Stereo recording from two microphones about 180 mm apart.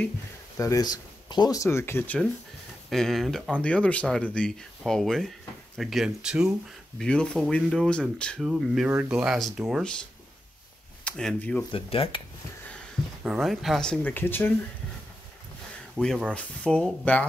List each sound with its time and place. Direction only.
0.6 s speech: 20° left (ahead or behind); by 9.9 s centre (ahead or behind)
11.1 s speech: 5° left (ahead or behind)
11.7 s cutlery: 30° left (ahead or behind)
13.2 s speech: centre (ahead or behind)
16.0 s speech: centre (ahead or behind)